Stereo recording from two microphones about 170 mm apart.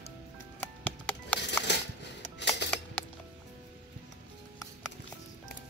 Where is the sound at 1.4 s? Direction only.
85° left.